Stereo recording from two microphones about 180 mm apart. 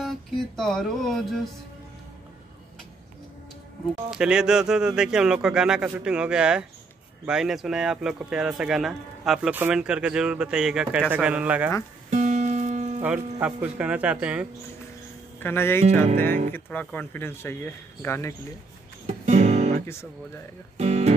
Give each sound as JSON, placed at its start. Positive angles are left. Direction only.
{"t": 0.0, "sound": "speech", "side_deg": 0}
{"t": 4.1, "sound": "speech", "side_deg": -5}
{"t": 12.1, "sound": "music", "side_deg": -40}
{"t": 13.0, "sound": "speech", "side_deg": -5}
{"t": 15.4, "sound": "speech", "side_deg": 15}
{"t": 19.2, "sound": "music", "side_deg": -40}
{"t": 20.7, "sound": "speech", "side_deg": -35}